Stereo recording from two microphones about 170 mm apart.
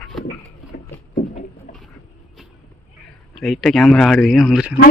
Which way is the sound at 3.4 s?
Centre (ahead or behind).